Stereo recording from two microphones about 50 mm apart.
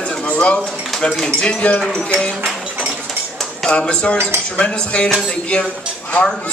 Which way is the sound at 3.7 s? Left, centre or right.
Left.